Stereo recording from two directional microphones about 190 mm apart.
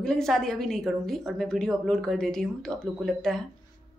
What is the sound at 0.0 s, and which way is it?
Speech, centre (ahead or behind).